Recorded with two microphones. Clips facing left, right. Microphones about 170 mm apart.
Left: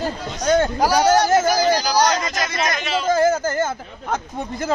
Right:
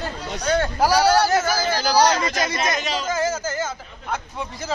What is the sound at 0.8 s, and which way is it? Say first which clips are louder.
Speech: right 3 dB; 15° left (ahead or behind).